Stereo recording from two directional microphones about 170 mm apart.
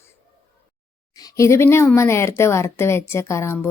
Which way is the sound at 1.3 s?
15° left (ahead or behind).